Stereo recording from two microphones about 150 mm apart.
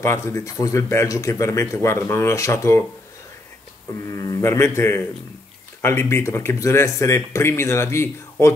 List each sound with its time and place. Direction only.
0.0 s speech: 20° left (ahead or behind)
3.9 s speech: 20° left (ahead or behind)